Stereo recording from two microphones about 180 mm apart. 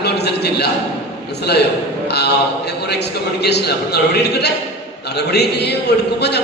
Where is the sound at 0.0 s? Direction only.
65° left (ahead or behind).